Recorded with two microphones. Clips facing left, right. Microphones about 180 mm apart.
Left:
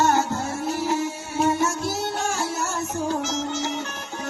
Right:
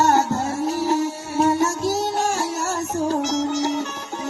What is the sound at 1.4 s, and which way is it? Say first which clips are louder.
Music: right 3 dB; 40° right (ahead or behind).